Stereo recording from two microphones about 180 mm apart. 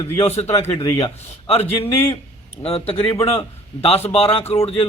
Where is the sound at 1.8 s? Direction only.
10° left (ahead or behind).